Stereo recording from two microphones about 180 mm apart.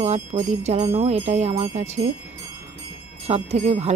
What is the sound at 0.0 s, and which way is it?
Speech, 40° right (ahead or behind).